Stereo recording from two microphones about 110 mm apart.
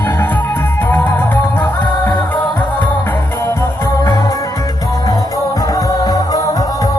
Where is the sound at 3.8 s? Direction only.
35° left (ahead or behind).